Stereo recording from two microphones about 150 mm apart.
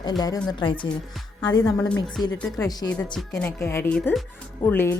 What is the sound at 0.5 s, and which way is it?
A woman's voice, 35° left (ahead or behind).